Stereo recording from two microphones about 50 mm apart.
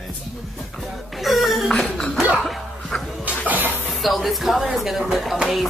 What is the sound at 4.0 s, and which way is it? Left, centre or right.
Speech, centre.